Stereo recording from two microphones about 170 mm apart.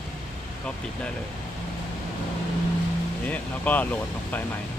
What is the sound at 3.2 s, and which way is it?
Speech, 10° left (ahead or behind).